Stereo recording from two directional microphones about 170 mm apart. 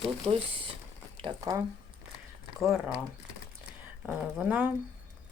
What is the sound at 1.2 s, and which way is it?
Speech, 25° right (ahead or behind).